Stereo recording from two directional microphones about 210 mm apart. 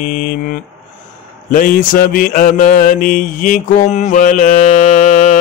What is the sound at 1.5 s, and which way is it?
Mantra, 40° left (ahead or behind).